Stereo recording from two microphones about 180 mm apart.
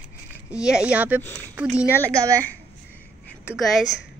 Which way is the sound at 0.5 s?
5° right (ahead or behind).